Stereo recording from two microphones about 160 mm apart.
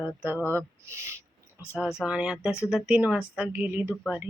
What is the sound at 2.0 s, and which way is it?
Speech, 5° right (ahead or behind).